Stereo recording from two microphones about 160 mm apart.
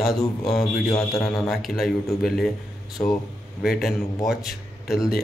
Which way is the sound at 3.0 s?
15° left (ahead or behind).